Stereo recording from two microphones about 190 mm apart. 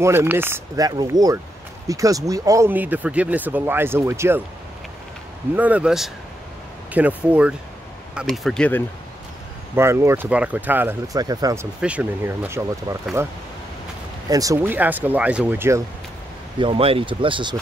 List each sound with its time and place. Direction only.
0.0 s speech: 15° right (ahead or behind)
5.6 s speech: 5° right (ahead or behind)
9.8 s speech: 15° right (ahead or behind)
11.8 s speech: 5° right (ahead or behind)
16.5 s speech: 30° right (ahead or behind)